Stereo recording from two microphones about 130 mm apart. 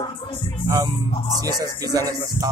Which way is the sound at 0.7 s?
25° right (ahead or behind).